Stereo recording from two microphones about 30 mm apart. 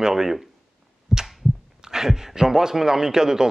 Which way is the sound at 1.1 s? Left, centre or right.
Centre.